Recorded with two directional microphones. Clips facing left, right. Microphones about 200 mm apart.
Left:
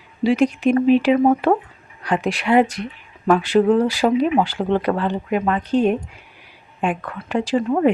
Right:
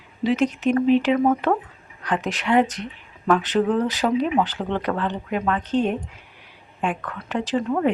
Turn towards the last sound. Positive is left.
turn(degrees=10)  # may be behind; listen again after turning